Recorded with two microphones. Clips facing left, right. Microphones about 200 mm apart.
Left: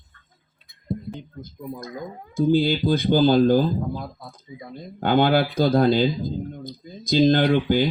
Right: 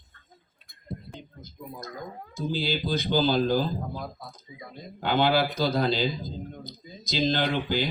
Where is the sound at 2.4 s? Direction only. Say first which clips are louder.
Left 10 dB; 55° left (ahead or behind).